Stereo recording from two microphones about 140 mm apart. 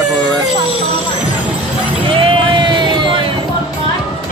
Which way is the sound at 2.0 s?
35° right (ahead or behind).